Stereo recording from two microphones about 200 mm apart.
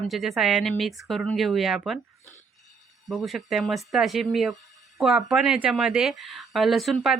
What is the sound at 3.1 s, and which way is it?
Speech, centre (ahead or behind).